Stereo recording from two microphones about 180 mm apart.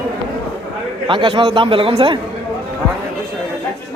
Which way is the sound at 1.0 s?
25° right (ahead or behind).